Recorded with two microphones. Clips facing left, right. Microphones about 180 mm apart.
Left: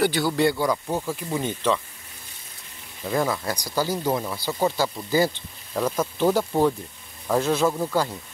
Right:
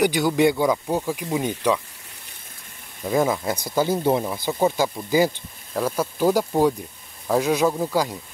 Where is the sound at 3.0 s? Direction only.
15° right (ahead or behind).